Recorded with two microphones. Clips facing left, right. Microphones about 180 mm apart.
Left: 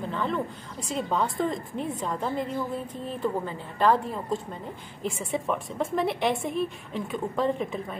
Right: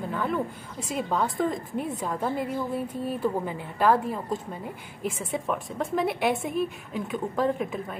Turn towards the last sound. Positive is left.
turn(degrees=-5)  # may be behind; listen again after turning